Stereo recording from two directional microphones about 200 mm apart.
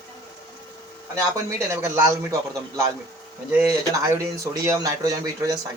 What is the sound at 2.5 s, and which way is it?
Speech, 15° right (ahead or behind).